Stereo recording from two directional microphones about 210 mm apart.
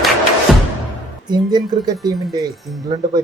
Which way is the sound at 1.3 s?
20° right (ahead or behind).